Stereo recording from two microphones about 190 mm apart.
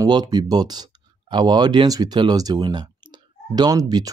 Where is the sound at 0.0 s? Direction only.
20° right (ahead or behind).